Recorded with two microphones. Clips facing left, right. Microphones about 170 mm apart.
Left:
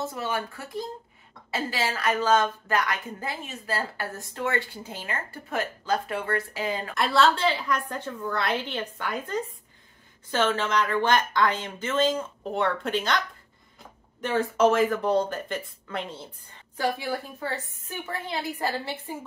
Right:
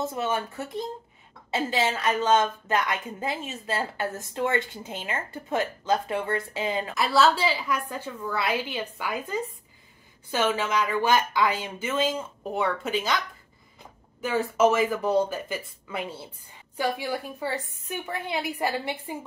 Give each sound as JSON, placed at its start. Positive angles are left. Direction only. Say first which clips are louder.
{"t": 0.0, "sound": "a woman's voice", "louder": "right 2 dB", "side_deg": -20}
{"t": 7.0, "sound": "a woman's voice", "louder": "even", "side_deg": -5}
{"t": 14.2, "sound": "a woman's voice", "louder": "even", "side_deg": -5}